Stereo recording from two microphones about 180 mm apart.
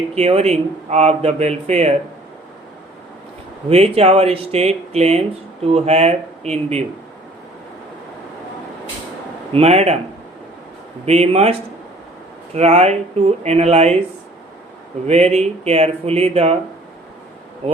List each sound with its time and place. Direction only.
0.1 s speech: 35° right (ahead or behind)
3.9 s speech: 35° right (ahead or behind)
9.5 s speech: 35° right (ahead or behind)
11.0 s speech: 35° right (ahead or behind)
12.5 s speech: 35° right (ahead or behind)
15.0 s speech: 35° right (ahead or behind)